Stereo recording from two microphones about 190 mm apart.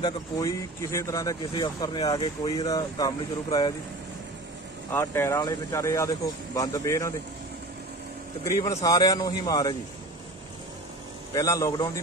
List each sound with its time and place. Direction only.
0.0 s speech: 20° left (ahead or behind)
4.9 s speech: 15° left (ahead or behind)
8.5 s speech: 20° left (ahead or behind)
11.3 s speech: 15° left (ahead or behind)